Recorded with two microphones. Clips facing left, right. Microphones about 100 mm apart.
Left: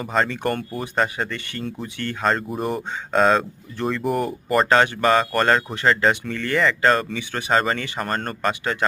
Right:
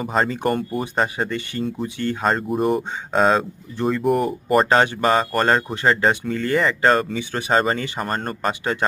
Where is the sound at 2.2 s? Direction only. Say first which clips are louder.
Right 2 dB; 5° right (ahead or behind).